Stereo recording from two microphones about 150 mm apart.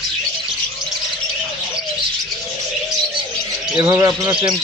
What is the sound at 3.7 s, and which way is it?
Speech, 25° right (ahead or behind).